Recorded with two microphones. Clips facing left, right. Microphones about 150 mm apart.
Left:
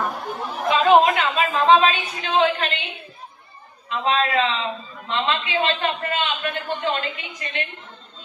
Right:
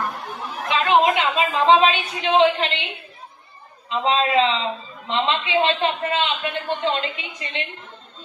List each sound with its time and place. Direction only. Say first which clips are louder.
0.0 s chatter: left 2 dB; centre (ahead or behind)
1.0 s a man's voice: right 1 dB; 20° right (ahead or behind)
3.8 s a man's voice: right 1 dB; 20° right (ahead or behind)